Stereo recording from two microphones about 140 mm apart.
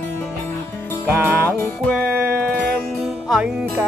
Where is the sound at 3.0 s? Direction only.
5° right (ahead or behind).